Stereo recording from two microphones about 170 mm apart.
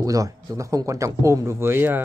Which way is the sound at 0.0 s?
20° right (ahead or behind).